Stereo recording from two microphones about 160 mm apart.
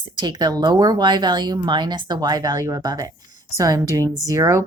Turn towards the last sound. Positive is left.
turn(degrees=-20)  # may be behind; listen again after turning